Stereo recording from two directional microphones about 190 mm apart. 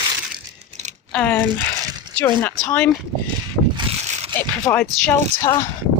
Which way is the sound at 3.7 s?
30° right (ahead or behind).